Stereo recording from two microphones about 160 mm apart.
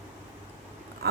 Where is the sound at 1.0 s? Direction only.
80° right.